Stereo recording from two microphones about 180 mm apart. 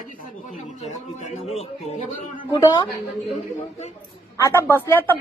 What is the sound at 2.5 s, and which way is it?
Speech, 20° left (ahead or behind).